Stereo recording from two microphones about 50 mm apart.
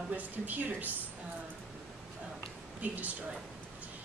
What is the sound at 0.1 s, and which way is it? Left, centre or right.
Speech, right.